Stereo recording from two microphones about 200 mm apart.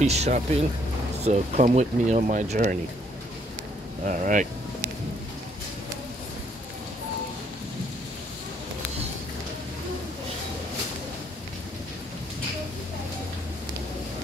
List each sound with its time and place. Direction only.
0.0 s speech: 35° right (ahead or behind)
4.0 s speech: 40° right (ahead or behind)